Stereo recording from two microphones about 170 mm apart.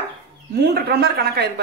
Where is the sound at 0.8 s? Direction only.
70° right (ahead or behind).